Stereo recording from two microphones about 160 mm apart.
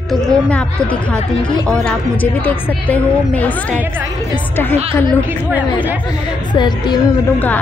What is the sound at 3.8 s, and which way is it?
Speech, 10° right (ahead or behind).